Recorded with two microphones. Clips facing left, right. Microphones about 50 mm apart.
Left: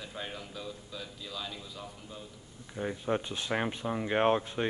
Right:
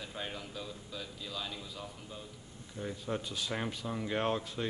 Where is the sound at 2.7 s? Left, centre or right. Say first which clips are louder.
Left 6 dB; left.